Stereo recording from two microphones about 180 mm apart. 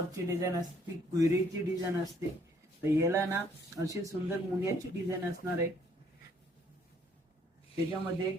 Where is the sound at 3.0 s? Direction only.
15° right (ahead or behind).